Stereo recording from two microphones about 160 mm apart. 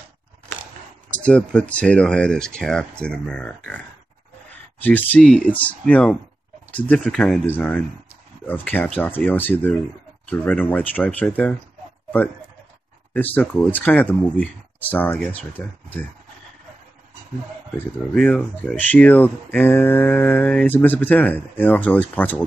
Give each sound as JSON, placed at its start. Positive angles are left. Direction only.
{"t": 1.2, "sound": "speech", "side_deg": 5}
{"t": 4.8, "sound": "mantra", "side_deg": 10}
{"t": 13.1, "sound": "mantra", "side_deg": 10}
{"t": 17.7, "sound": "mantra", "side_deg": 10}